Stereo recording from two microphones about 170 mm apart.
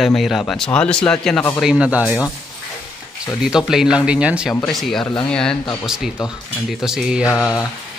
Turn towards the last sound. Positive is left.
turn(degrees=0)  # may be behind; listen again after turning